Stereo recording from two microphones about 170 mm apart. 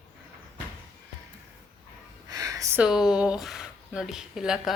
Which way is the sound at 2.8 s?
5° right (ahead or behind).